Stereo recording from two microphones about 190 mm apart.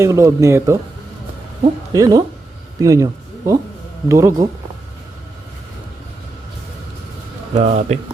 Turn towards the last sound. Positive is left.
turn(degrees=-35)  # may be behind; listen again after turning